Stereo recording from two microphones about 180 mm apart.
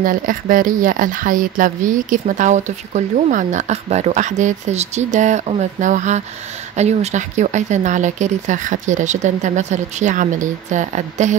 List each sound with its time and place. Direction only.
0.0 s speech: 50° right (ahead or behind)